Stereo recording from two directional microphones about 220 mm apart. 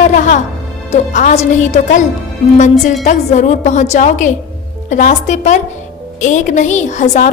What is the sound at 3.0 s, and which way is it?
A woman's voice, 30° left (ahead or behind).